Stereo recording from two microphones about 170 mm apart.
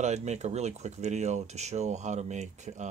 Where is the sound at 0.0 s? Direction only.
40° right (ahead or behind).